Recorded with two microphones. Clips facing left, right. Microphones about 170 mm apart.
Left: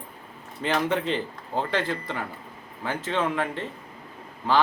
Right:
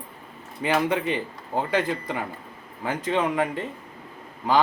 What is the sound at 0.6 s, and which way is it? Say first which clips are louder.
A man's voice: right 2 dB; 10° right (ahead or behind).